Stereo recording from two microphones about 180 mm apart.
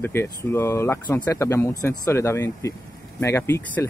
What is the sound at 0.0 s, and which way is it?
Speech, 15° left (ahead or behind).